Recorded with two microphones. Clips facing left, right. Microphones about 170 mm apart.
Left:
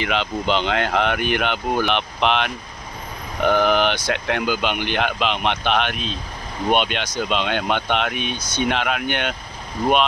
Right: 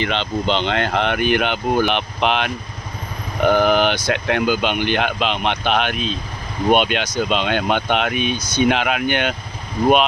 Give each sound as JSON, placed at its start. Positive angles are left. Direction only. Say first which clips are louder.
{"t": 0.0, "sound": "speech", "louder": "right 2 dB", "side_deg": 5}